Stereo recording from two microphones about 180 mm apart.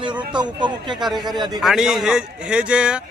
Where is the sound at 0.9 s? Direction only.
Centre (ahead or behind).